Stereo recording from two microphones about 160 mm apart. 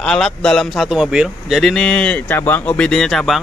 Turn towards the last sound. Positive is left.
turn(degrees=0)  # may be behind; listen again after turning